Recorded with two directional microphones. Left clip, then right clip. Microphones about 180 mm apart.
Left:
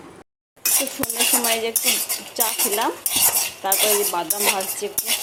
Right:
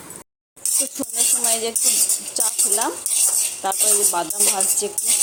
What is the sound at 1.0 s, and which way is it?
Speech, 5° right (ahead or behind).